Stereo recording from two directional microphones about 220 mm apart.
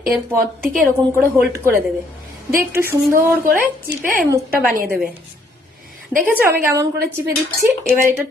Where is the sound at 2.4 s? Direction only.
10° right (ahead or behind).